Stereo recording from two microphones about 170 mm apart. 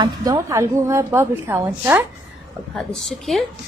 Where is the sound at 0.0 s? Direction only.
20° right (ahead or behind).